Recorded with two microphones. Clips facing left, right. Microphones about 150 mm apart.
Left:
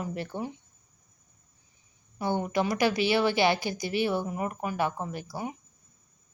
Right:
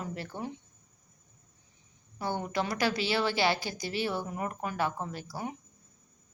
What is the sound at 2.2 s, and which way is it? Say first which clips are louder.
A woman's voice: left 4 dB; 15° left (ahead or behind).